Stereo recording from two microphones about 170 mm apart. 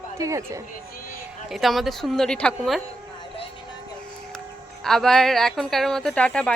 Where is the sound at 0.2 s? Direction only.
20° right (ahead or behind).